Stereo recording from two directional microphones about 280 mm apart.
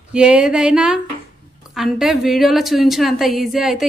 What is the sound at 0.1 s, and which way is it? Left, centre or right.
A woman's voice, centre.